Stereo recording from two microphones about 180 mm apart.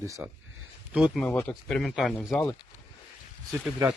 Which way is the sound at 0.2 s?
15° right (ahead or behind).